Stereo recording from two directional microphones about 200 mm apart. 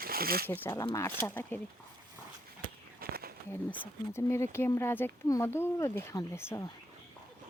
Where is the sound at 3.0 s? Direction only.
50° right (ahead or behind).